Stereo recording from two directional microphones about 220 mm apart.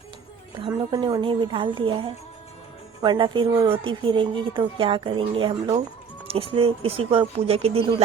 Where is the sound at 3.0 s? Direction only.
20° right (ahead or behind).